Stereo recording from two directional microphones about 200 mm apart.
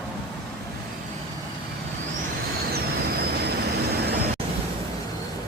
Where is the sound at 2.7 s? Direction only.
50° right (ahead or behind).